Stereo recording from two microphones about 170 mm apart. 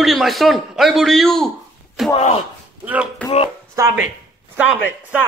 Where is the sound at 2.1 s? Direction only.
35° left (ahead or behind).